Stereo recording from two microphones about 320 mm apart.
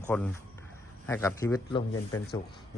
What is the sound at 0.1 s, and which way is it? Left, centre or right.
A man's voice, centre.